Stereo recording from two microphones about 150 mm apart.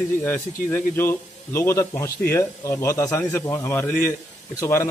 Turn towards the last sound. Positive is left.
turn(degrees=15)  # may be behind; listen again after turning